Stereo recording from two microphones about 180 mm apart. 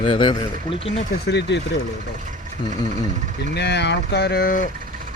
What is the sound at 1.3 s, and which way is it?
Speech, 70° left (ahead or behind).